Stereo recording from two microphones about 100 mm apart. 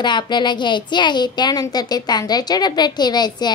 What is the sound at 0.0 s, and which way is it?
Speech, 50° left (ahead or behind).